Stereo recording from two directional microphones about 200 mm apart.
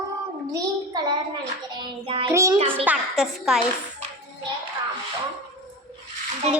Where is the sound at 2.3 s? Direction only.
15° right (ahead or behind).